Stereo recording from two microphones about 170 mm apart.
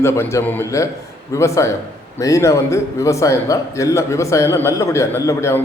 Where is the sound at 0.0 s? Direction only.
15° left (ahead or behind).